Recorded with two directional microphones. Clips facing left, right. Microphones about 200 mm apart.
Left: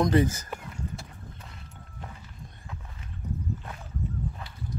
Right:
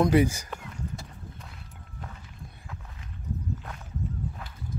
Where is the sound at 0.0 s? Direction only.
10° right (ahead or behind).